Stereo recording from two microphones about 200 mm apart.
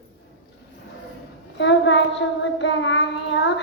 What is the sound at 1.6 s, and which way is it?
Child singing, 65° left (ahead or behind).